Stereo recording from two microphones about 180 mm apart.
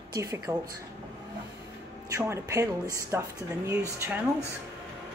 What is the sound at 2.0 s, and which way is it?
Speech, 15° right (ahead or behind).